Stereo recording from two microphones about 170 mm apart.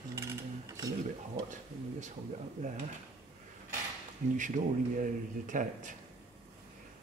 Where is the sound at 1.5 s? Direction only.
45° right (ahead or behind).